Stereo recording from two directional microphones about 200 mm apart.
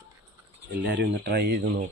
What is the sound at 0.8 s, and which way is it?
Speech, 55° right (ahead or behind).